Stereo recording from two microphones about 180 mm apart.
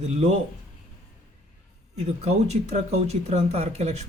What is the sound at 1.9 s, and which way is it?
Speech, 35° right (ahead or behind).